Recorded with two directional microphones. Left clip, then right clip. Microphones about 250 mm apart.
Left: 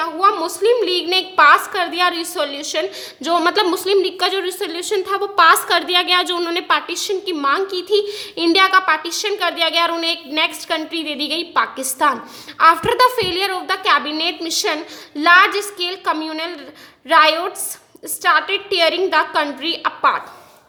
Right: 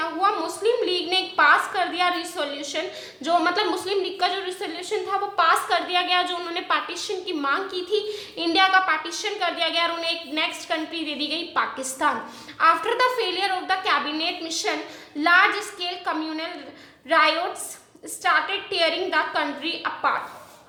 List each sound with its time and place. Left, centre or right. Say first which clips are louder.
0.0 s a woman's voice: left 7 dB; left